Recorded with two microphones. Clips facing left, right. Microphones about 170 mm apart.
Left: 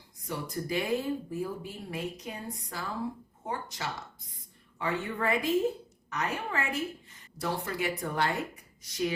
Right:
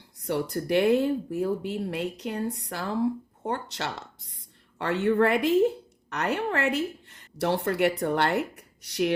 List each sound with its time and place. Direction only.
0.2 s speech: 70° right (ahead or behind)